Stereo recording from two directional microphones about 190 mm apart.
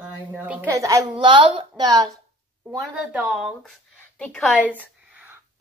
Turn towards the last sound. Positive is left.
turn(degrees=-10)  # may be behind; listen again after turning